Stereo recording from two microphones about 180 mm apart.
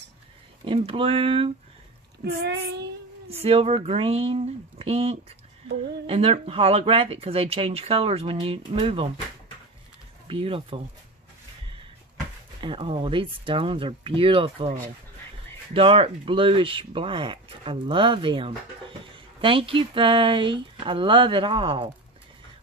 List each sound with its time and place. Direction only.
0.7 s speech: 30° right (ahead or behind)
2.2 s a child's voice: 65° right (ahead or behind)
3.4 s speech: 30° right (ahead or behind)
10.2 s speech: 30° right (ahead or behind)
12.5 s speech: 30° right (ahead or behind)